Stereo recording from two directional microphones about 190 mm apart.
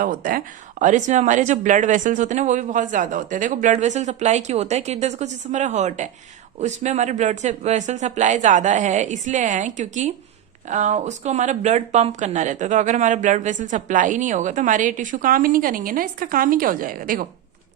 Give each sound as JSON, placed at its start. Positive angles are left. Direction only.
{"t": 0.0, "sound": "speech", "side_deg": -45}